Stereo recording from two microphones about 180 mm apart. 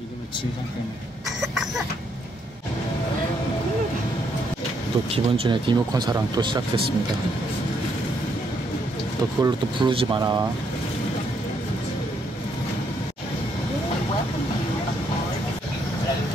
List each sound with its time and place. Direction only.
5.1 s speech: 30° right (ahead or behind)
9.4 s speech: 30° right (ahead or behind)